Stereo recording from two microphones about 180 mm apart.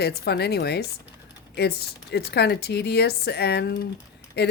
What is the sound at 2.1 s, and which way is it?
Speech, 65° left (ahead or behind).